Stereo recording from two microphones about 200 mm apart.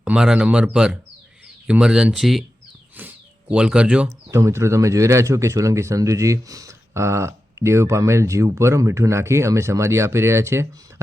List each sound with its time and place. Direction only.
0.0 s speech: 5° right (ahead or behind)
3.5 s speech: 5° right (ahead or behind)